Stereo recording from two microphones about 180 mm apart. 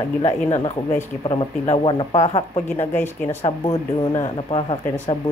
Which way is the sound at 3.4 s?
35° left (ahead or behind).